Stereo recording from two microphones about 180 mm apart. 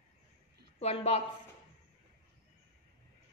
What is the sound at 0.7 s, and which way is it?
Speech, 35° left (ahead or behind).